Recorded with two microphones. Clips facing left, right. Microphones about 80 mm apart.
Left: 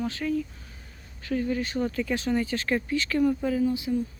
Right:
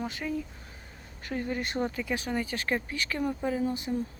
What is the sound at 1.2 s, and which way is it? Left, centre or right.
Speech, right.